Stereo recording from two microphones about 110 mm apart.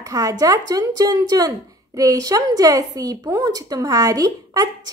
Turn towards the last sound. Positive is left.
turn(degrees=-35)  # may be behind; listen again after turning